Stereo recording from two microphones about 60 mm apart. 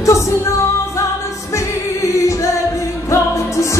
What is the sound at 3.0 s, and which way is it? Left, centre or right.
Music, left.